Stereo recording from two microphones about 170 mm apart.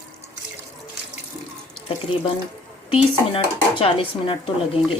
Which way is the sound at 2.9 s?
30° left (ahead or behind).